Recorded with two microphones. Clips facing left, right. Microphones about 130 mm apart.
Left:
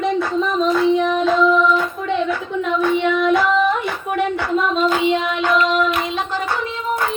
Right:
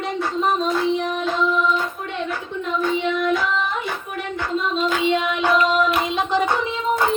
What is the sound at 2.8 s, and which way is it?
Child singing, 65° left (ahead or behind).